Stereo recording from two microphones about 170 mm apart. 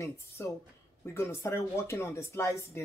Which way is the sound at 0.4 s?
10° left (ahead or behind).